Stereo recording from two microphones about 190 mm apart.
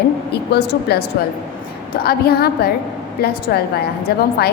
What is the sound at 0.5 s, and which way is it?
A woman's voice, 60° left (ahead or behind).